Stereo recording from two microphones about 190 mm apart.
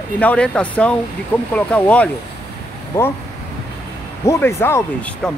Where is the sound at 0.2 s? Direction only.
5° left (ahead or behind).